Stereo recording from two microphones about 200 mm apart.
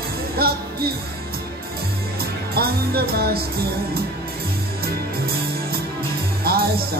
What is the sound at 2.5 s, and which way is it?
Speech, 50° right (ahead or behind).